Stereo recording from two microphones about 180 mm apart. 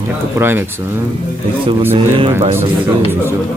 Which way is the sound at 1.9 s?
30° right (ahead or behind).